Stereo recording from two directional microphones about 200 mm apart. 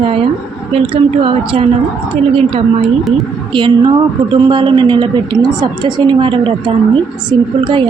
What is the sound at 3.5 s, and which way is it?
A woman's voice, 25° right (ahead or behind).